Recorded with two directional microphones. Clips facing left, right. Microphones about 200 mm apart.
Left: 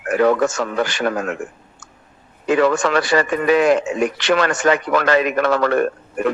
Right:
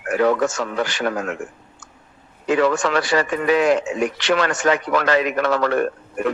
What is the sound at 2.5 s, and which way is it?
A man's voice, 55° left (ahead or behind).